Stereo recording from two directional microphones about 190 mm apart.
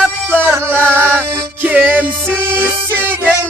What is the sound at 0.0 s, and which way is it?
Music, 10° right (ahead or behind).